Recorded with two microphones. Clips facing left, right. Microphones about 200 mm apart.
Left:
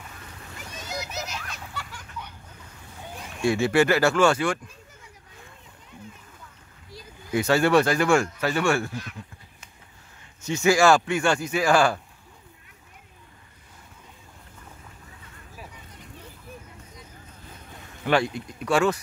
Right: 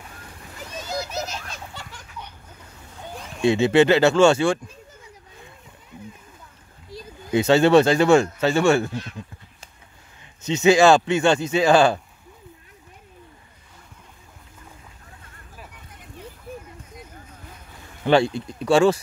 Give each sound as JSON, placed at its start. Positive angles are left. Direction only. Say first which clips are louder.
{"t": 0.7, "sound": "a sound", "louder": "right 5 dB", "side_deg": -30}
{"t": 3.3, "sound": "speech", "louder": "right 4 dB", "side_deg": -20}
{"t": 7.2, "sound": "speech", "louder": "right 5 dB", "side_deg": -25}
{"t": 10.4, "sound": "speech", "louder": "right 4 dB", "side_deg": -20}
{"t": 18.0, "sound": "speech", "louder": "right 5 dB", "side_deg": -30}